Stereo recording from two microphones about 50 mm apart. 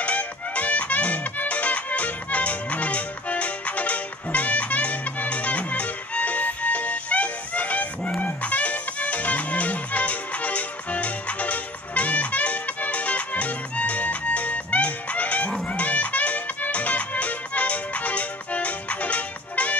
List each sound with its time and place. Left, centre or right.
0.0 s music: left